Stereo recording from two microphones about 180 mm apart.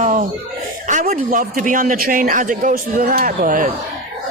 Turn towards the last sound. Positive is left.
turn(degrees=-45)  # may be behind; listen again after turning